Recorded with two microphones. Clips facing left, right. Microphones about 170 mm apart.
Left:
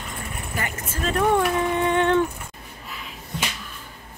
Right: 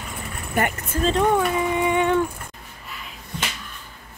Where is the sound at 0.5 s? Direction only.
55° right (ahead or behind).